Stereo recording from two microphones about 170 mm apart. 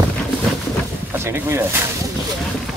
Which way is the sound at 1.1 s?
15° right (ahead or behind).